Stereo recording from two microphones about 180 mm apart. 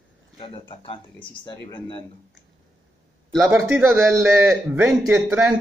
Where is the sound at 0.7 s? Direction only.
30° left (ahead or behind).